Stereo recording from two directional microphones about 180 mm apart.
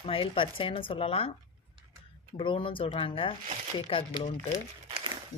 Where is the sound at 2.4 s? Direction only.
25° left (ahead or behind).